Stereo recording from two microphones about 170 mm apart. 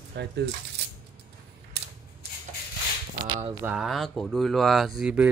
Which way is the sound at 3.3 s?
35° right (ahead or behind).